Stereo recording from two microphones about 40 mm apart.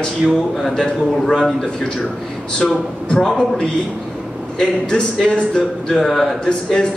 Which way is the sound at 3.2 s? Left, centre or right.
Centre.